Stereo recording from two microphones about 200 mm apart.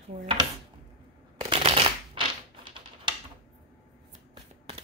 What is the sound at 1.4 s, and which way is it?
Shuffling cards, 25° right (ahead or behind).